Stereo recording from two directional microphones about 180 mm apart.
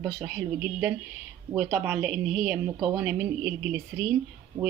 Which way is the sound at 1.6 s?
10° right (ahead or behind).